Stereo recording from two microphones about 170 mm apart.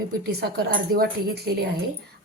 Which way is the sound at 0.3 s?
65° right (ahead or behind).